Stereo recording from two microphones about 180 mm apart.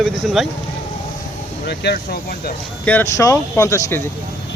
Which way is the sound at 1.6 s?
65° left (ahead or behind).